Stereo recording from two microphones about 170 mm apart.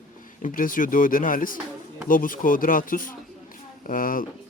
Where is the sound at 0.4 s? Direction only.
55° left (ahead or behind).